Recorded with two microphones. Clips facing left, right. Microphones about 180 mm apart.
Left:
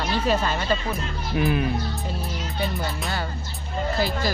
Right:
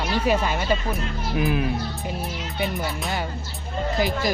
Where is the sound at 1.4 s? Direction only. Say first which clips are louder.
Left 1 dB; centre (ahead or behind).